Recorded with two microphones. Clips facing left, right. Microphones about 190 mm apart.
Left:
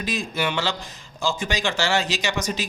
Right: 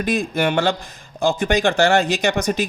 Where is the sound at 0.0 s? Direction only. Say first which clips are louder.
Right 6 dB; 55° right (ahead or behind).